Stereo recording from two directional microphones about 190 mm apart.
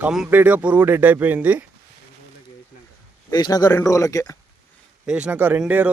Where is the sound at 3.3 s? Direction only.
20° left (ahead or behind).